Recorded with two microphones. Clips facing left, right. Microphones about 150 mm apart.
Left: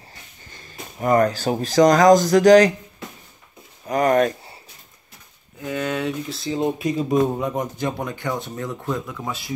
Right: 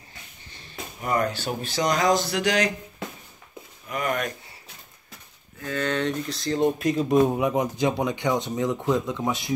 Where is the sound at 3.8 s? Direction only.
40° left (ahead or behind).